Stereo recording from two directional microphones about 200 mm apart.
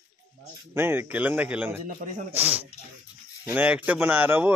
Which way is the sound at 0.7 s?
10° right (ahead or behind).